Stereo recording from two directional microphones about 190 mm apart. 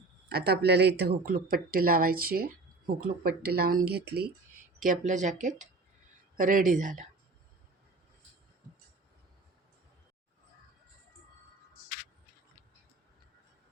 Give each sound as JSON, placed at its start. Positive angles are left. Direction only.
{"t": 0.3, "sound": "speech", "side_deg": -55}
{"t": 4.8, "sound": "speech", "side_deg": -40}